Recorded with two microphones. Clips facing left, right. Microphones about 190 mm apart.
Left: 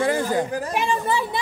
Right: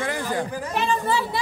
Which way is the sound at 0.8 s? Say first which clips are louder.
Right 1 dB; 15° left (ahead or behind).